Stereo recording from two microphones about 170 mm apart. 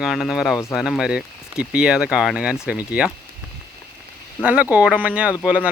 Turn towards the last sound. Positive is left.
turn(degrees=-5)  # may be behind; listen again after turning